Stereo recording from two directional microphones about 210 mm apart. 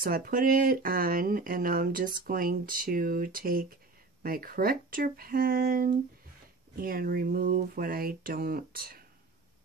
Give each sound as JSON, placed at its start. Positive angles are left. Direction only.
{"t": 0.0, "sound": "speech", "side_deg": -40}